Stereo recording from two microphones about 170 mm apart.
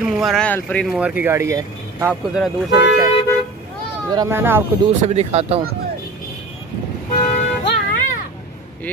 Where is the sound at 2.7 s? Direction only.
90° left.